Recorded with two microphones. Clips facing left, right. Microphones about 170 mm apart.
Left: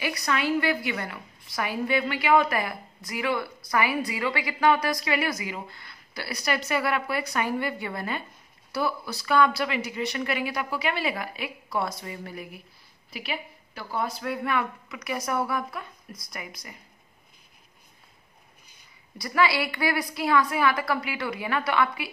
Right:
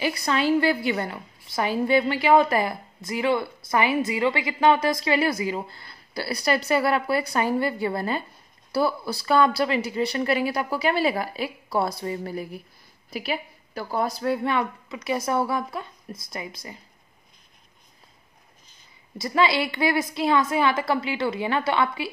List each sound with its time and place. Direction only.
0.0 s a woman's voice: 30° right (ahead or behind)
19.1 s a woman's voice: 25° right (ahead or behind)